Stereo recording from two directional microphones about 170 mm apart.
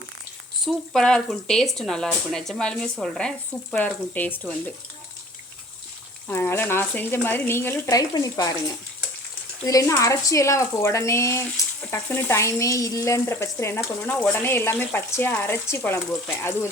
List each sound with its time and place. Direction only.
0.6 s speech: 5° left (ahead or behind)
6.2 s speech: 15° left (ahead or behind)
9.6 s speech: 20° left (ahead or behind)